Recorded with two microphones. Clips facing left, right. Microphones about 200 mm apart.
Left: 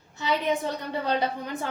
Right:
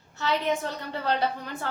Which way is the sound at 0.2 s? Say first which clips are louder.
Left 1 dB; 15° left (ahead or behind).